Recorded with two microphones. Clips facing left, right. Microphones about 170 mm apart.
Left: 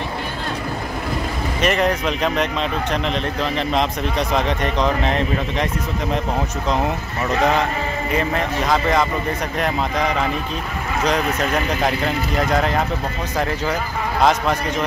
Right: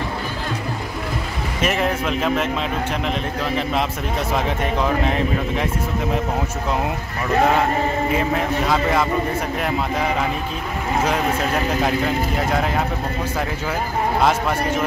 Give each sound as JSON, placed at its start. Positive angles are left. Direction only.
{"t": 1.6, "sound": "speech", "side_deg": -5}
{"t": 4.3, "sound": "speech", "side_deg": -5}
{"t": 8.1, "sound": "speech", "side_deg": -5}
{"t": 11.1, "sound": "speech", "side_deg": -10}
{"t": 14.2, "sound": "speech", "side_deg": -5}